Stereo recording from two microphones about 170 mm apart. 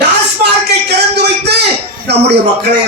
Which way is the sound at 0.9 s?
75° right (ahead or behind).